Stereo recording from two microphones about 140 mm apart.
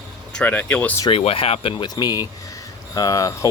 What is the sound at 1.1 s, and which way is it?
Speech, 45° left (ahead or behind).